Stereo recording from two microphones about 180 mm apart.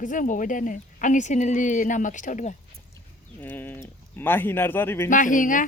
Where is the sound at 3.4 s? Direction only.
10° left (ahead or behind).